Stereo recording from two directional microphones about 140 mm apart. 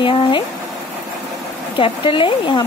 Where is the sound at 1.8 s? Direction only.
40° left (ahead or behind).